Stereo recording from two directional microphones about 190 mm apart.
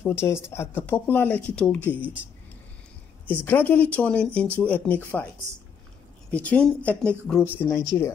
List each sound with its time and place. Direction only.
0.0 s speech: 15° left (ahead or behind)
3.3 s speech: 10° left (ahead or behind)
6.3 s speech: 5° left (ahead or behind)
7.5 s speech: 15° left (ahead or behind)